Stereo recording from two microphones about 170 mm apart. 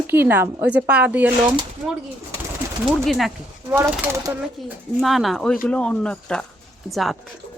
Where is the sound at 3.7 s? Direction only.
10° right (ahead or behind).